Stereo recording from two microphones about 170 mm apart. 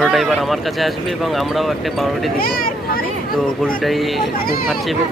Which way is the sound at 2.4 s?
60° left (ahead or behind).